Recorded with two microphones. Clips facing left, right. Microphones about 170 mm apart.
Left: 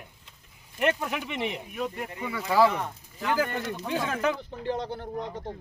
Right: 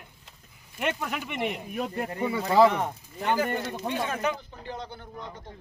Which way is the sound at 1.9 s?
45° right (ahead or behind).